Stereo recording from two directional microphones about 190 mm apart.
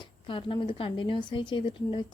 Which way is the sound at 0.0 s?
25° left (ahead or behind).